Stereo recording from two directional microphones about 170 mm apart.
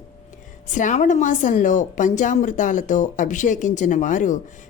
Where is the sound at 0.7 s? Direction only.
45° left (ahead or behind).